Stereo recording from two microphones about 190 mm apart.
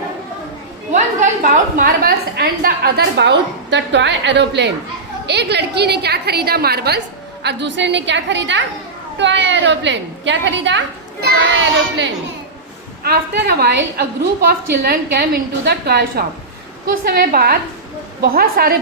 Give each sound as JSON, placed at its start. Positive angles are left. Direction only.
{"t": 0.9, "sound": "a woman's voice", "side_deg": -40}
{"t": 13.0, "sound": "a woman's voice", "side_deg": -55}